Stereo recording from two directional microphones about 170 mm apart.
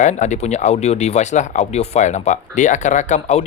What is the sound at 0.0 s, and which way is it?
Speech, 45° left (ahead or behind).